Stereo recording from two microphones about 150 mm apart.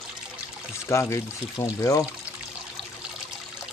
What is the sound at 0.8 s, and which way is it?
Speech, 20° left (ahead or behind).